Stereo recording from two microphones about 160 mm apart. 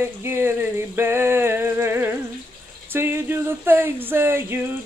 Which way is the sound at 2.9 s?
15° right (ahead or behind).